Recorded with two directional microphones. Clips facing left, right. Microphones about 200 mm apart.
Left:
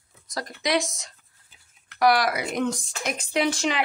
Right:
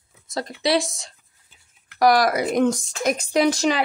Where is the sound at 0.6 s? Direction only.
30° right (ahead or behind).